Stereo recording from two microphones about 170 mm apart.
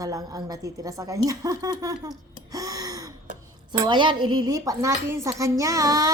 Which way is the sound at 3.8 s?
30° right (ahead or behind).